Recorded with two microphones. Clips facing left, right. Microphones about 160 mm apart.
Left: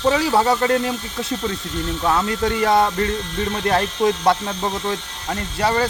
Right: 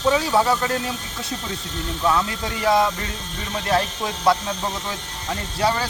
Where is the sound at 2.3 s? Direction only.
55° left (ahead or behind).